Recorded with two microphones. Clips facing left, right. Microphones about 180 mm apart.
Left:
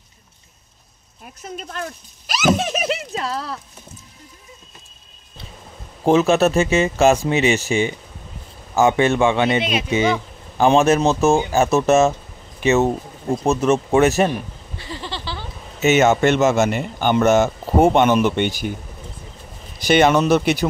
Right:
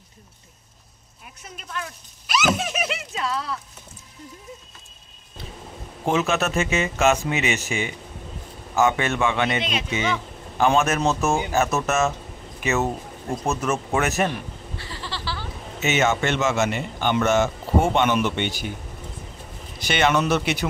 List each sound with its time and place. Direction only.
1.2 s speech: 40° left (ahead or behind)
6.0 s speech: 35° left (ahead or behind)
9.6 s speech: 10° left (ahead or behind)
9.8 s speech: 35° left (ahead or behind)
14.3 s a sound: 20° left (ahead or behind)
15.8 s speech: 40° left (ahead or behind)
19.8 s speech: 40° left (ahead or behind)